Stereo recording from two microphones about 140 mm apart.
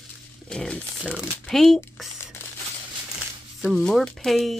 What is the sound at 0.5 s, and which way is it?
Speech, 5° left (ahead or behind).